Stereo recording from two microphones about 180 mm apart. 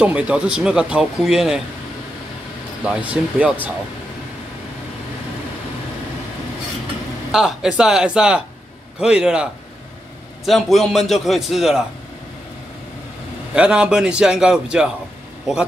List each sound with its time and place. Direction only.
0.0 s speech: 5° right (ahead or behind)
2.8 s speech: 5° right (ahead or behind)
7.2 s speech: 5° right (ahead or behind)
13.6 s speech: 5° right (ahead or behind)